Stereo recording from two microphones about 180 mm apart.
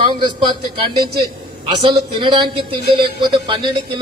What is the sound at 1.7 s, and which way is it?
A man's voice, 25° right (ahead or behind).